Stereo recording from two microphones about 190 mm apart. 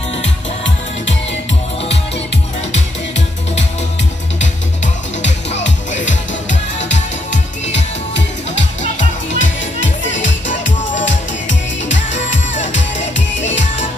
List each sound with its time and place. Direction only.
7.6 s music: 70° left (ahead or behind)